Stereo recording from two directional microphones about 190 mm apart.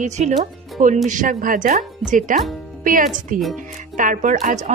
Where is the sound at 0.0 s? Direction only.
40° right (ahead or behind).